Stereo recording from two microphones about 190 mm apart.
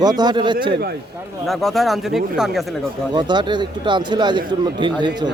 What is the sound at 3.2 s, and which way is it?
Speech, 25° right (ahead or behind).